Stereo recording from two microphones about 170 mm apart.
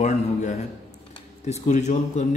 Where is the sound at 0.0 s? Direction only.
45° left (ahead or behind).